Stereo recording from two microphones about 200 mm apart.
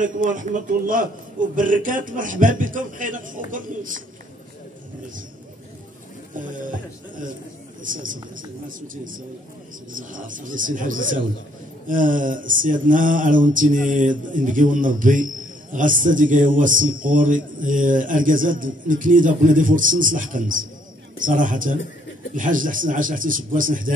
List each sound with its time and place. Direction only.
0.0 s mantra: 40° right (ahead or behind)
7.8 s a man's voice: 40° right (ahead or behind)
9.9 s mantra: 40° right (ahead or behind)
22.3 s a man's voice: 40° right (ahead or behind)